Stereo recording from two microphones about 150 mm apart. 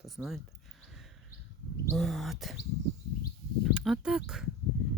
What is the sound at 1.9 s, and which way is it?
Speech, centre (ahead or behind).